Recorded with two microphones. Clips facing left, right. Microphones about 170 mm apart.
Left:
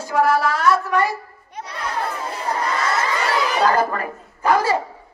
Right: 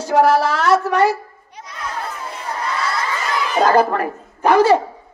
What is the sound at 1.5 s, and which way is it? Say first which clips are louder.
Children playing: left 5 dB; 65° left (ahead or behind).